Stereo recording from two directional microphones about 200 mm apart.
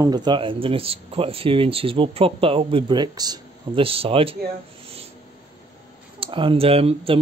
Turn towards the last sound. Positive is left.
turn(degrees=-30)  # may be behind; listen again after turning